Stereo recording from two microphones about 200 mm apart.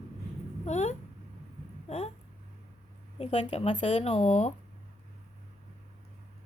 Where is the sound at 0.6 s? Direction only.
35° left (ahead or behind).